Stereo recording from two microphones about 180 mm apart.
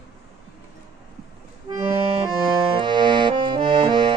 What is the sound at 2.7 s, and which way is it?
Accordion, 25° right (ahead or behind).